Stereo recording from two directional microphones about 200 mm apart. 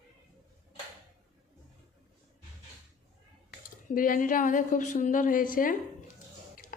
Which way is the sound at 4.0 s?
45° left (ahead or behind).